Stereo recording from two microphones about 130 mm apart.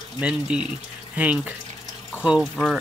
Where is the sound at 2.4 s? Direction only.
Centre (ahead or behind).